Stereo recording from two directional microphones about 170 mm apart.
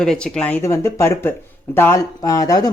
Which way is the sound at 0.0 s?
5° left (ahead or behind).